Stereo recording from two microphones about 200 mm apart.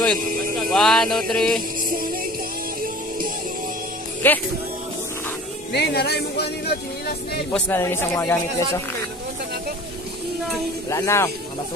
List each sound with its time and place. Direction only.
0.7 s music: centre (ahead or behind)
1.9 s music: 45° right (ahead or behind)
4.2 s a man's voice: 10° left (ahead or behind)
5.7 s speech: 55° left (ahead or behind)
7.5 s a man's voice: 10° left (ahead or behind)
10.9 s a man's voice: 15° left (ahead or behind)